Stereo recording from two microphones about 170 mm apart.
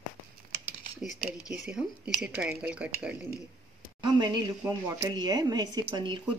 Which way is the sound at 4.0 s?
25° right (ahead or behind).